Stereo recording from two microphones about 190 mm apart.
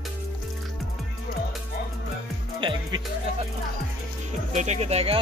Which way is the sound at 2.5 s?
25° right (ahead or behind).